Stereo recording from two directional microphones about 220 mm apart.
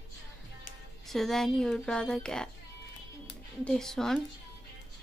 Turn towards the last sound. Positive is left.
turn(degrees=0)  # may be behind; listen again after turning